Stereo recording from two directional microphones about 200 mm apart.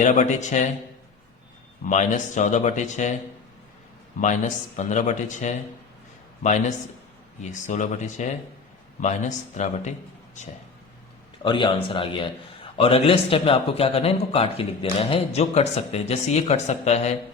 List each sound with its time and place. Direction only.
0.0 s speech: 40° left (ahead or behind)
1.8 s speech: 35° left (ahead or behind)
4.2 s speech: 40° left (ahead or behind)
11.4 s a man's voice: 25° left (ahead or behind)